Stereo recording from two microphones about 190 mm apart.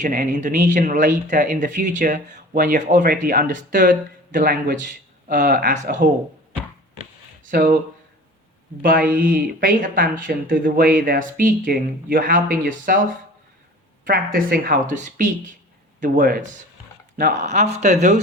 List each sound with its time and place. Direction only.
0.0 s speech: 45° right (ahead or behind)
7.4 s speech: 50° right (ahead or behind)
8.8 s speech: 50° right (ahead or behind)
14.0 s speech: 45° right (ahead or behind)